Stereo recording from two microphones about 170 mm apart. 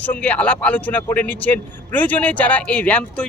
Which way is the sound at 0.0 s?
10° left (ahead or behind).